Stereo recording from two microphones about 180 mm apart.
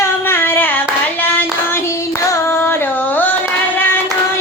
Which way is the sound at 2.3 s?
15° left (ahead or behind).